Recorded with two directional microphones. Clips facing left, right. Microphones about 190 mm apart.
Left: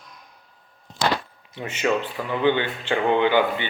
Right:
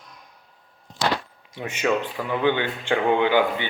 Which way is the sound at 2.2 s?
10° left (ahead or behind).